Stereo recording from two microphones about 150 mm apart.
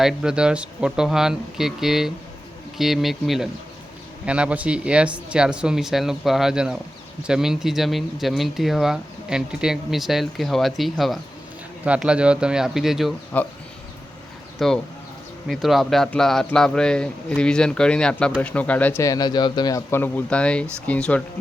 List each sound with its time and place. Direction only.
0.0 s speech: 5° right (ahead or behind)
14.6 s speech: centre (ahead or behind); by 19.8 s 25° left (ahead or behind)
19.9 s speech: 15° left (ahead or behind)